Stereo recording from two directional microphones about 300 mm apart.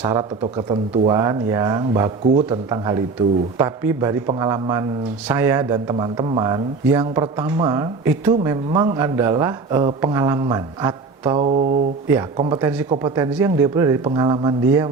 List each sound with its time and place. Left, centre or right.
0.0 s speech: centre